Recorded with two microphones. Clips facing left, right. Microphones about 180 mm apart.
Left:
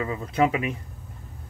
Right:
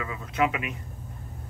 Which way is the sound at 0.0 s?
35° left (ahead or behind).